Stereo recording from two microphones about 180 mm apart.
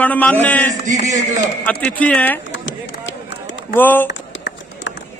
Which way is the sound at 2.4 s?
85° left.